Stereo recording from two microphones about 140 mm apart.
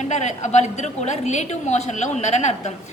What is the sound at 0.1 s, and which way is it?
A woman's voice, 55° left (ahead or behind).